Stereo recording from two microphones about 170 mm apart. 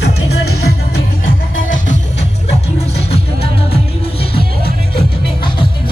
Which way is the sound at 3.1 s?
35° left (ahead or behind).